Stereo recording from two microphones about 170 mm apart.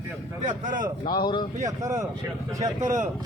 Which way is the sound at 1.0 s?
25° left (ahead or behind).